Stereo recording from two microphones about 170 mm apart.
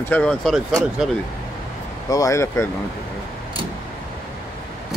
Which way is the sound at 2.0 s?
20° left (ahead or behind).